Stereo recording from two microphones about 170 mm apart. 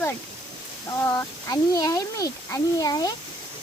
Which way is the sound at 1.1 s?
20° left (ahead or behind).